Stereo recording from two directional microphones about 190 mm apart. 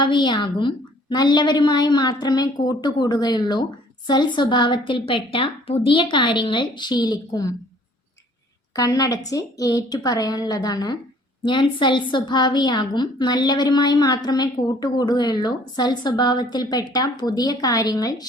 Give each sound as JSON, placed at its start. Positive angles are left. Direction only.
{"t": 0.0, "sound": "a woman's voice", "side_deg": 25}
{"t": 8.7, "sound": "a woman's voice", "side_deg": 20}